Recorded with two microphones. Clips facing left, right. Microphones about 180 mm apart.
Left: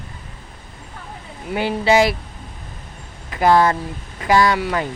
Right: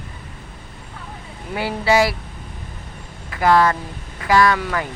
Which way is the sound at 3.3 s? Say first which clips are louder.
Left 1 dB; 25° left (ahead or behind).